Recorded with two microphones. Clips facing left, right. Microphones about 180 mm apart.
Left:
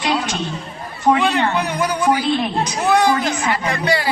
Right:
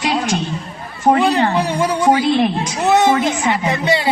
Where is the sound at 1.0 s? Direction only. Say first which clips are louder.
Right 2 dB; 35° right (ahead or behind).